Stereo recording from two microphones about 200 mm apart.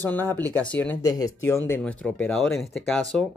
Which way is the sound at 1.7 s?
5° left (ahead or behind).